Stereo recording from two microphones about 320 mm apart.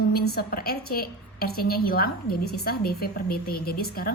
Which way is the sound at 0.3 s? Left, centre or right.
Left.